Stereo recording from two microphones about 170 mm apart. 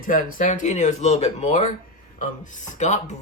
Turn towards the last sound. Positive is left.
turn(degrees=45)  # may be behind; listen again after turning